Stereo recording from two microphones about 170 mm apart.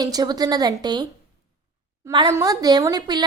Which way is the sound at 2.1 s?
20° right (ahead or behind).